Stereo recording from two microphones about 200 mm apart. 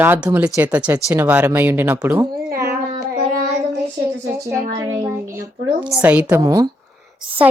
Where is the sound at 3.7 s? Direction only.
15° right (ahead or behind).